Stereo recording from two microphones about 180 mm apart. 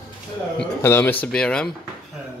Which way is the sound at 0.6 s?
15° left (ahead or behind).